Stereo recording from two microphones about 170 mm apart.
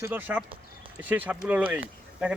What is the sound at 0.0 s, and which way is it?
Speech, 10° right (ahead or behind).